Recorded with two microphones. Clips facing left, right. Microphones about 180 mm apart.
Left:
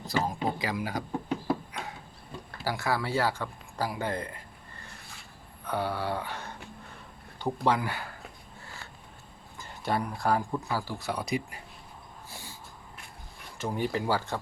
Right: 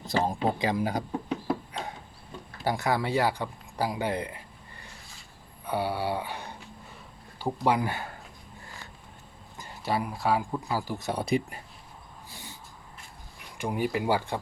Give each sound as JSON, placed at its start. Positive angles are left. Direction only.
{"t": 0.1, "sound": "speech", "side_deg": -25}
{"t": 2.6, "sound": "speech", "side_deg": -20}
{"t": 5.6, "sound": "speech", "side_deg": -10}
{"t": 9.8, "sound": "speech", "side_deg": -5}
{"t": 10.8, "sound": "speech", "side_deg": -20}
{"t": 13.6, "sound": "speech", "side_deg": -10}